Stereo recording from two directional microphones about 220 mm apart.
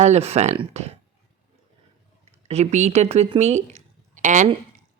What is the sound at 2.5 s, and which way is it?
A woman's voice, 30° right (ahead or behind).